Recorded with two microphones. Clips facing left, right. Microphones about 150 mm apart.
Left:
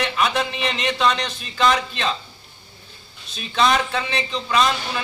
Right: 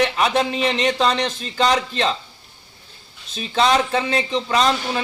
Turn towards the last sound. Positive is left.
turn(degrees=-35)  # may be behind; listen again after turning